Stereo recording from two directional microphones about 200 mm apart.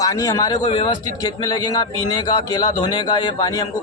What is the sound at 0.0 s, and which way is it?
A man's voice, 15° left (ahead or behind).